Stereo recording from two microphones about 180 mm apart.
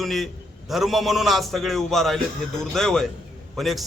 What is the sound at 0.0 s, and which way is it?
A man's voice, centre (ahead or behind).